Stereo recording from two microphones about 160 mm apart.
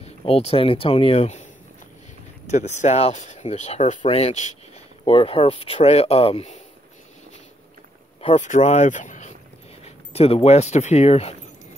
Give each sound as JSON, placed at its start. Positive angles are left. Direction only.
{"t": 0.0, "sound": "speech", "side_deg": 40}
{"t": 8.4, "sound": "speech", "side_deg": 45}
{"t": 9.8, "sound": "speech", "side_deg": 40}